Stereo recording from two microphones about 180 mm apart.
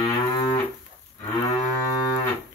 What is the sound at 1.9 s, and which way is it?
Cattle, 20° left (ahead or behind).